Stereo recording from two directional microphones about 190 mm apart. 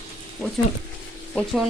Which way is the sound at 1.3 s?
Centre (ahead or behind).